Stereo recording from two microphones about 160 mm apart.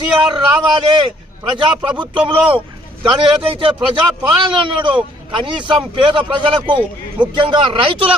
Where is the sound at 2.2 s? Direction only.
30° right (ahead or behind).